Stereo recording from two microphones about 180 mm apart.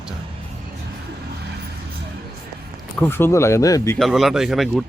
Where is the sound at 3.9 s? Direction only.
Centre (ahead or behind).